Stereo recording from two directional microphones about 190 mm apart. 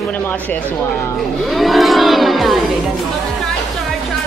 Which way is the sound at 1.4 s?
Centre (ahead or behind).